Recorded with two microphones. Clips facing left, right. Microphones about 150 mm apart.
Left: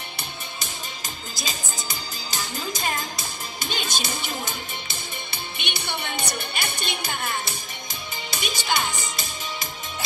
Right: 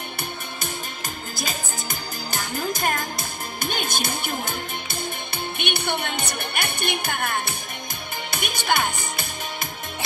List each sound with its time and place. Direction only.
1.3 s music: 55° right (ahead or behind)
5.6 s speech: 55° right (ahead or behind)
8.3 s music: 55° right (ahead or behind)